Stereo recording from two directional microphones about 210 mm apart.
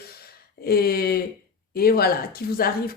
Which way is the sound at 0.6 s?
45° left (ahead or behind).